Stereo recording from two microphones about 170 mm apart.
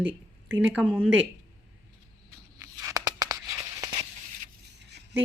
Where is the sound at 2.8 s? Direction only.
20° right (ahead or behind).